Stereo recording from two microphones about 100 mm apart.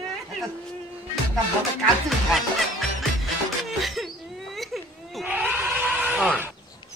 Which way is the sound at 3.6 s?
Centre (ahead or behind).